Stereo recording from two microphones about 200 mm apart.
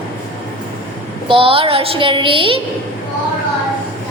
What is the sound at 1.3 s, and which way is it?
A woman's voice, 25° right (ahead or behind).